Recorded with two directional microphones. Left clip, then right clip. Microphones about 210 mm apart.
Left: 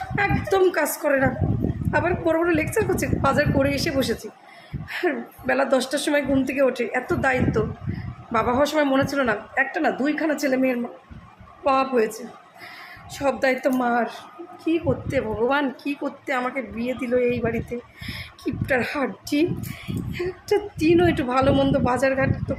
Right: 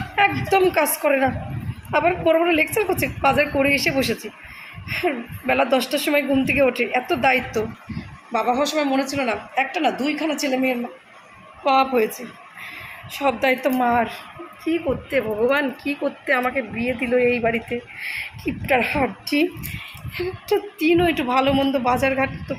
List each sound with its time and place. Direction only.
0.2 s speech: 5° left (ahead or behind)
8.3 s speech: 20° left (ahead or behind)
11.6 s speech: 10° left (ahead or behind)
18.0 s speech: 50° left (ahead or behind)
18.7 s speech: 5° left (ahead or behind)